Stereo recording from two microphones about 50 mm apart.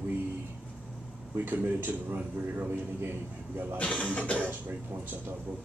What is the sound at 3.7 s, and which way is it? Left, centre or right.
Speech, left.